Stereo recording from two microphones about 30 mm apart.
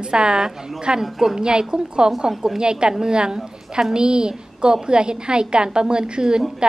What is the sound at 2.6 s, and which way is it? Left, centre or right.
A woman's voice, right.